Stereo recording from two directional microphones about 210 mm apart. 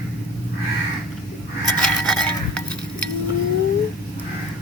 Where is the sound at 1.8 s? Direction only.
5° left (ahead or behind).